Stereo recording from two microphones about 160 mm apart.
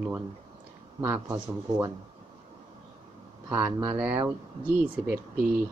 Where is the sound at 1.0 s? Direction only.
15° right (ahead or behind).